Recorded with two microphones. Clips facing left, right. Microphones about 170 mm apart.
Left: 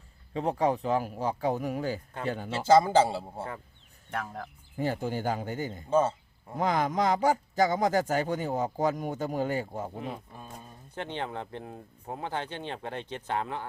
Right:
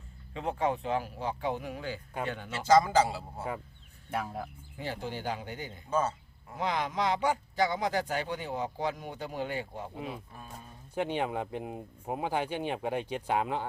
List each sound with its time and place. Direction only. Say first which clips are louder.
0.3 s a man's voice: left 4 dB; 35° left (ahead or behind)
4.1 s speech: right 1 dB; 10° right (ahead or behind)
4.8 s speech: left 6 dB; 45° left (ahead or behind)
5.9 s speech: left 5 dB; 30° left (ahead or behind)
6.6 s speech: left 4 dB; 45° left (ahead or behind)
10.9 s speech: right 4 dB; 10° right (ahead or behind)